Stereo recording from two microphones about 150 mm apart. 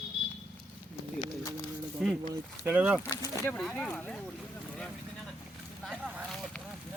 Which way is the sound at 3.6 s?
5° left (ahead or behind).